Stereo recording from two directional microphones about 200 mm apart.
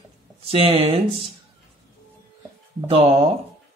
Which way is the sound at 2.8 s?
30° right (ahead or behind).